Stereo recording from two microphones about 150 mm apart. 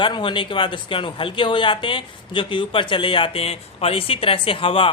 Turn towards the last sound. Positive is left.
turn(degrees=35)  # may be behind; listen again after turning